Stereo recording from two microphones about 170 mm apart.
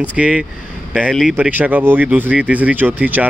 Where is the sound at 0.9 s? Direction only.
5° right (ahead or behind).